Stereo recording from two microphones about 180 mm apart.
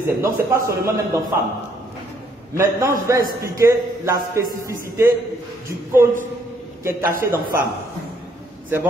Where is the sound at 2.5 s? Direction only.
15° right (ahead or behind).